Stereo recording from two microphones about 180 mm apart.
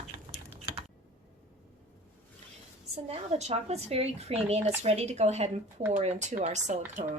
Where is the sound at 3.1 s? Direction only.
35° right (ahead or behind).